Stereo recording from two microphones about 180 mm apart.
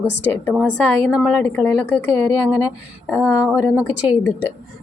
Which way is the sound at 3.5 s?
10° right (ahead or behind).